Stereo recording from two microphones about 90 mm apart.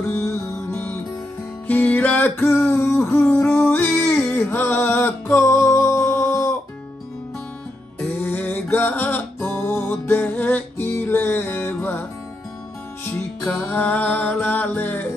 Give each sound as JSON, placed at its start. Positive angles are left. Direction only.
{"t": 0.1, "sound": "music", "side_deg": 30}
{"t": 2.5, "sound": "a sound", "side_deg": 30}
{"t": 3.4, "sound": "music", "side_deg": 25}
{"t": 8.0, "sound": "music", "side_deg": 20}